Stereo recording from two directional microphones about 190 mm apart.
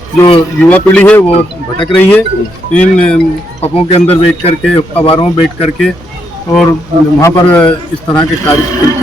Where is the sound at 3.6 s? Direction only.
30° left (ahead or behind).